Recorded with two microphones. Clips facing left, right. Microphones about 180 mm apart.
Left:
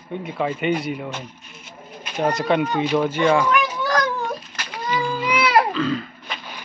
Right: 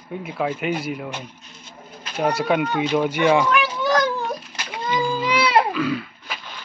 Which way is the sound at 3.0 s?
15° right (ahead or behind).